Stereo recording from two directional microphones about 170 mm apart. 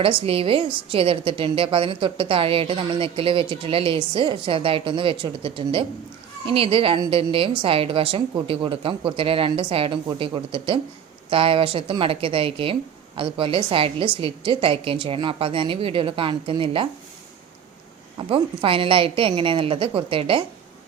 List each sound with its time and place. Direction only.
0.0 s a woman's voice: 35° right (ahead or behind)
18.2 s a woman's voice: 30° right (ahead or behind)